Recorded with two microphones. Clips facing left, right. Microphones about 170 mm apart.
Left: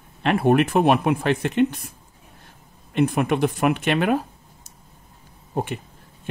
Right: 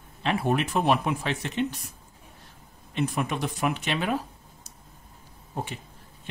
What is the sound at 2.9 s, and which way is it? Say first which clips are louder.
Speech: left 8 dB; 60° left (ahead or behind).